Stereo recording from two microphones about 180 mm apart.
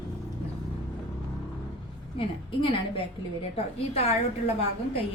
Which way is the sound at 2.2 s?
30° left (ahead or behind).